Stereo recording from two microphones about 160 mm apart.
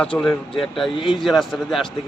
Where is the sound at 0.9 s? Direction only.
30° left (ahead or behind).